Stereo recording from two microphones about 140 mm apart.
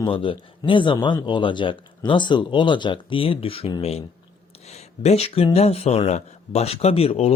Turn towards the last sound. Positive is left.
turn(degrees=50)  # may be behind; listen again after turning